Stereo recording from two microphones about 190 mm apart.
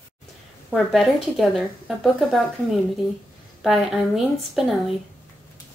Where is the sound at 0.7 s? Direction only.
Centre (ahead or behind).